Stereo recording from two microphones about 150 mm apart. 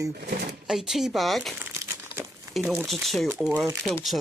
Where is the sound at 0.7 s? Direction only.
Centre (ahead or behind).